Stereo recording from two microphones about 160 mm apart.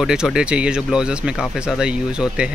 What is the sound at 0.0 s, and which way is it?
Speech, 5° right (ahead or behind).